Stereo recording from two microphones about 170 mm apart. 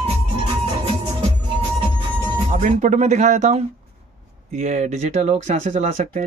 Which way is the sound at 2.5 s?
45° right (ahead or behind).